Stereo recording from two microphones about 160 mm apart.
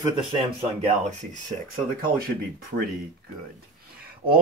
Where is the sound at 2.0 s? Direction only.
65° right (ahead or behind).